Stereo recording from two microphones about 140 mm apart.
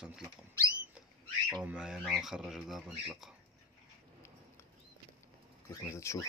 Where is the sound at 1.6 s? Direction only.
5° right (ahead or behind).